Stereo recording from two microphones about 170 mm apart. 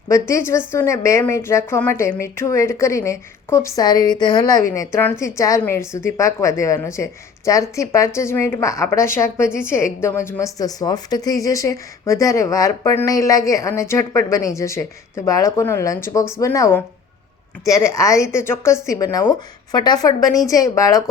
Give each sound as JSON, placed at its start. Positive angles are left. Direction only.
{"t": 0.1, "sound": "a woman's voice", "side_deg": 15}